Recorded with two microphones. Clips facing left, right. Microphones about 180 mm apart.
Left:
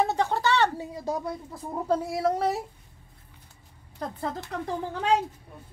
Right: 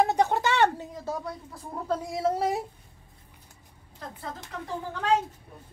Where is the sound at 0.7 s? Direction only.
10° left (ahead or behind).